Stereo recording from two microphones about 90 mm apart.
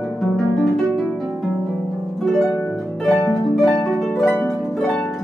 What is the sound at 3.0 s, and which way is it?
Harp, centre (ahead or behind).